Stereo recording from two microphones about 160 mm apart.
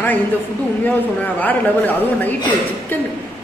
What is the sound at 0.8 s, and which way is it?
A woman's voice, 10° left (ahead or behind).